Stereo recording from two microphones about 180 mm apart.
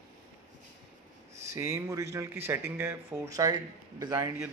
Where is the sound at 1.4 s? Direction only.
15° right (ahead or behind).